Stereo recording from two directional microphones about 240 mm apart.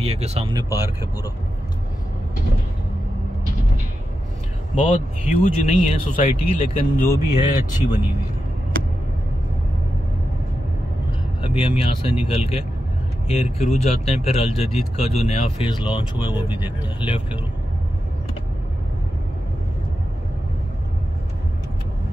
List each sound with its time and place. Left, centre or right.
0.0 s speech: right; by 0.9 s centre
4.7 s speech: left
7.5 s speech: centre
11.4 s speech: left